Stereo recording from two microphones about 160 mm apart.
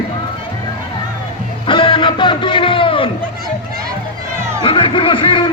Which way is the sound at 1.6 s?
30° left (ahead or behind).